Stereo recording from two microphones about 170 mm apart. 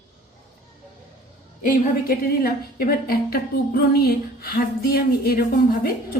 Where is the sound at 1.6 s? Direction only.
55° left (ahead or behind).